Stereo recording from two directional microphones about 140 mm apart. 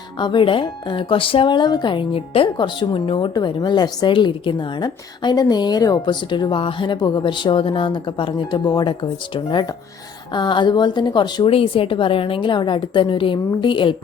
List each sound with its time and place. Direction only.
0.2 s speech: 35° left (ahead or behind)